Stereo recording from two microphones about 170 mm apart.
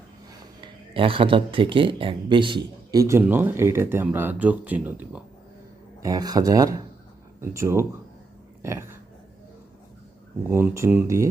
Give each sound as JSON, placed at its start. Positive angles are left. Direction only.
{"t": 0.6, "sound": "speech", "side_deg": -30}
{"t": 6.0, "sound": "speech", "side_deg": -20}
{"t": 8.6, "sound": "a sound", "side_deg": -15}
{"t": 10.5, "sound": "speech", "side_deg": -15}